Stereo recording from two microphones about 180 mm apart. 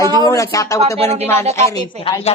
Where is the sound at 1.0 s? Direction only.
35° right (ahead or behind).